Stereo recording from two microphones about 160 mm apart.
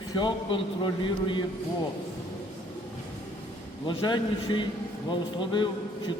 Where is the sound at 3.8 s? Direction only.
30° left (ahead or behind).